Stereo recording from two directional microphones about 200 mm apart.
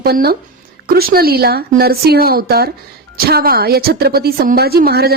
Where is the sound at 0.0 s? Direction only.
50° right (ahead or behind).